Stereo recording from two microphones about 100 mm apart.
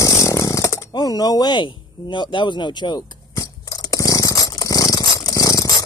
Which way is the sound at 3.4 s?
35° left (ahead or behind).